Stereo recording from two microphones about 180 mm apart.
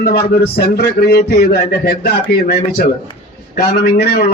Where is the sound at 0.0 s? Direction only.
60° left (ahead or behind).